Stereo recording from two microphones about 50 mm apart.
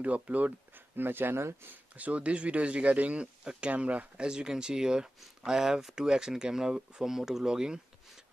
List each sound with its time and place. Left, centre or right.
0.0 s speech: right
2.0 s speech: right
4.3 s speech: centre